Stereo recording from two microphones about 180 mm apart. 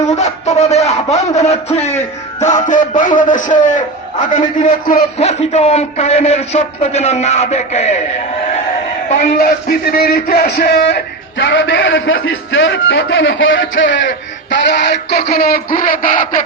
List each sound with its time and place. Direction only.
0.1 s a man's voice: 40° left (ahead or behind)
5.1 s a man's voice: 35° left (ahead or behind)
9.4 s a man's voice: 60° left (ahead or behind); by 14.0 s 90° left
14.5 s a sound: 70° left (ahead or behind); by 16.4 s 45° left (ahead or behind)